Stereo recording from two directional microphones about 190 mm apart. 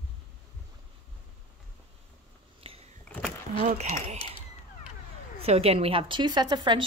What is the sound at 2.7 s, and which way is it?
Power windows, 30° right (ahead or behind).